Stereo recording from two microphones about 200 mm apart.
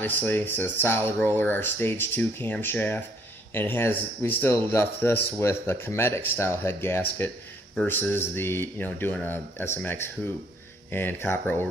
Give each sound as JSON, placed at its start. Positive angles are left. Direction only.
{"t": 0.0, "sound": "a man's voice", "side_deg": 10}